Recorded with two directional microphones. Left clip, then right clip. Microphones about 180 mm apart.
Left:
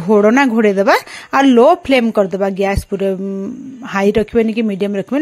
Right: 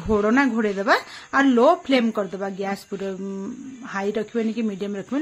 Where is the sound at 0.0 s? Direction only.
40° left (ahead or behind).